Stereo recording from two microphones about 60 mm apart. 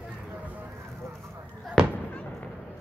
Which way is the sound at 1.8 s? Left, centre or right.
Centre.